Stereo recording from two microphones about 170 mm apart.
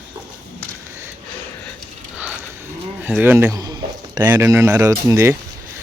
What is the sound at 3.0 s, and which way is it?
Bird, 10° right (ahead or behind).